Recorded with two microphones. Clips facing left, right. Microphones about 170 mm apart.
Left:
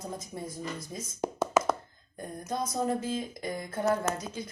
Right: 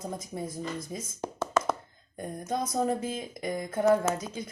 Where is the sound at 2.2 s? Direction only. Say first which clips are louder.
Right 2 dB; 25° right (ahead or behind).